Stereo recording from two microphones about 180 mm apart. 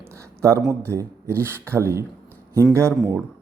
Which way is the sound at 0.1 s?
15° right (ahead or behind).